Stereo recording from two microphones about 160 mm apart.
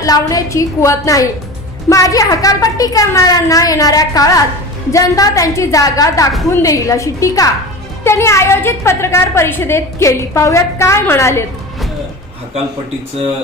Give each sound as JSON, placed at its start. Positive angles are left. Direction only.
{"t": 0.0, "sound": "a woman's voice", "side_deg": 20}